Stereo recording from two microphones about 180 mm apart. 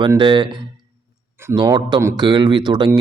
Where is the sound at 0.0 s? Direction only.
25° right (ahead or behind).